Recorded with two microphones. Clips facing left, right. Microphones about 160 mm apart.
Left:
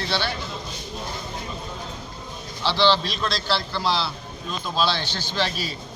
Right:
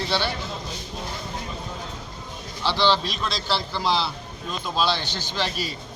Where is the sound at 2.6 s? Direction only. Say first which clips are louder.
Left 1 dB; 15° right (ahead or behind).